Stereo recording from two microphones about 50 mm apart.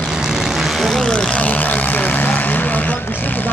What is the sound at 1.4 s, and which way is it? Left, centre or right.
Vehicle, left.